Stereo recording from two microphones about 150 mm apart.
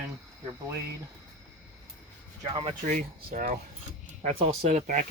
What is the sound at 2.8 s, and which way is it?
Speech, 60° right (ahead or behind).